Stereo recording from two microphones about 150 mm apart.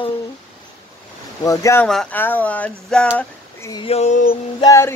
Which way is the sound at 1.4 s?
20° left (ahead or behind).